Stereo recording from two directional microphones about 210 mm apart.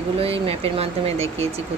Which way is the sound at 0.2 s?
30° right (ahead or behind).